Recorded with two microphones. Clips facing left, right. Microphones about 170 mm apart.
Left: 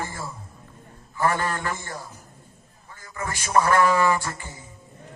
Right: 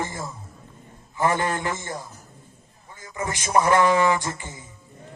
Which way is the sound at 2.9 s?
15° right (ahead or behind).